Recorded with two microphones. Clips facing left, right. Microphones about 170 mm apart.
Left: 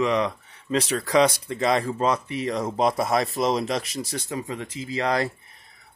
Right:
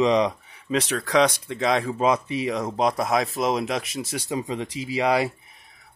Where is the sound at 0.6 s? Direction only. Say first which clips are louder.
Even; centre (ahead or behind).